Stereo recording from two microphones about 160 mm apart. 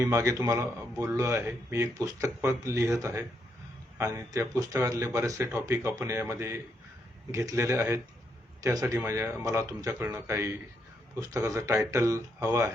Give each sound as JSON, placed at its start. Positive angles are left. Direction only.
{"t": 0.0, "sound": "speech", "side_deg": -20}